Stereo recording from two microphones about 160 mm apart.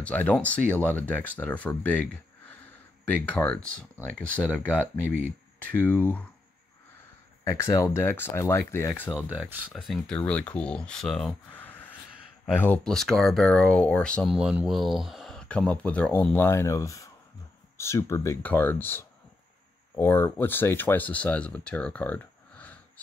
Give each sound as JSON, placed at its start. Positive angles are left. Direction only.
{"t": 0.0, "sound": "speech", "side_deg": 10}
{"t": 3.1, "sound": "speech", "side_deg": 10}
{"t": 7.4, "sound": "speech", "side_deg": 20}
{"t": 9.7, "sound": "speech", "side_deg": 5}
{"t": 14.3, "sound": "speech", "side_deg": -5}